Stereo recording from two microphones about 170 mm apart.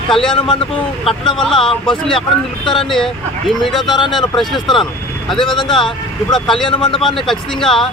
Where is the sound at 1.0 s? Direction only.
35° left (ahead or behind).